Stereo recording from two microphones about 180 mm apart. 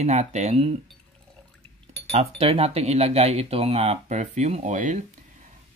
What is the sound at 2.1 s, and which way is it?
Speech, 35° right (ahead or behind).